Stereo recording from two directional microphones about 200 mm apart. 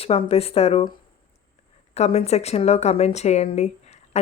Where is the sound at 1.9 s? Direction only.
30° left (ahead or behind).